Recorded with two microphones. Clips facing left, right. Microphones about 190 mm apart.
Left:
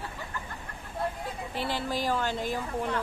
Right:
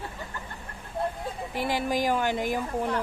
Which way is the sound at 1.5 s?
15° right (ahead or behind).